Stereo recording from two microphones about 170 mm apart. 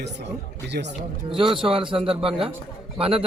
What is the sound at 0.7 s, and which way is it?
Speech, 90° right.